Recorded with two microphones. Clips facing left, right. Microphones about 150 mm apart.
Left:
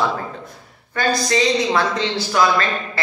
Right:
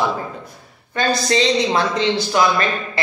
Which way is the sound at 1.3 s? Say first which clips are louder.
Right 1 dB; 25° right (ahead or behind).